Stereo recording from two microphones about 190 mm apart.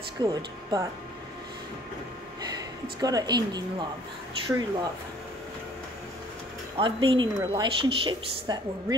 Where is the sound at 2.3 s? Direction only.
20° right (ahead or behind).